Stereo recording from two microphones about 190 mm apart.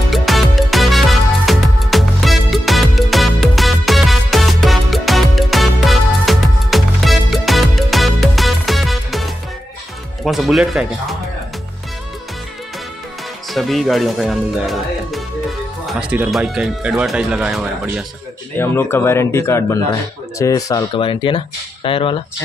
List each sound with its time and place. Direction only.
0.1 s music: centre (ahead or behind)
10.2 s speech: centre (ahead or behind)
13.5 s speech: centre (ahead or behind)
18.6 s speech: 10° left (ahead or behind); by 22.2 s 25° left (ahead or behind)